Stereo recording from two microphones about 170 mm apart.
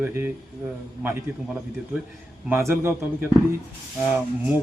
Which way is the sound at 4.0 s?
5° right (ahead or behind).